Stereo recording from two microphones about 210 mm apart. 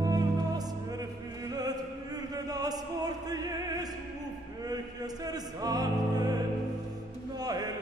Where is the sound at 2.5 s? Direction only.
20° right (ahead or behind).